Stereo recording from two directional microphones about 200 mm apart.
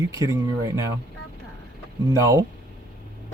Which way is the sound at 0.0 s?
15° right (ahead or behind).